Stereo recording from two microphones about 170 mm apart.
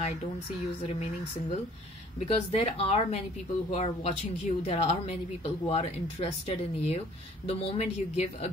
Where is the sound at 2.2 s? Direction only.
35° left (ahead or behind).